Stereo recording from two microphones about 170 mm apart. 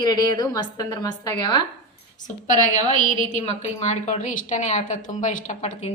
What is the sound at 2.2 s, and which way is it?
A woman's voice, 45° left (ahead or behind).